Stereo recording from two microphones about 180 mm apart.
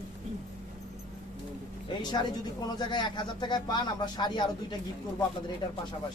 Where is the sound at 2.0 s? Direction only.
25° left (ahead or behind).